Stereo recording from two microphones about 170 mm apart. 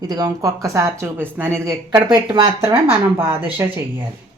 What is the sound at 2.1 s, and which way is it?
Speech, 25° right (ahead or behind).